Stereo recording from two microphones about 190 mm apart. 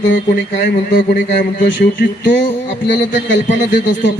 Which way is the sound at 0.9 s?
45° left (ahead or behind).